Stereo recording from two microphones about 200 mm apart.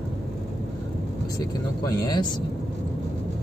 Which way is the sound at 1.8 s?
20° left (ahead or behind).